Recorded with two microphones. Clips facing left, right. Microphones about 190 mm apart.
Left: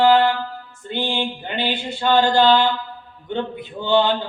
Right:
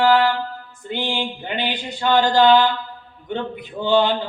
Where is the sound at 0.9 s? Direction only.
15° right (ahead or behind).